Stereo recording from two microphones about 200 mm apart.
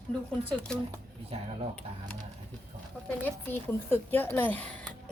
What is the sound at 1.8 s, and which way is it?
Speech, 30° right (ahead or behind).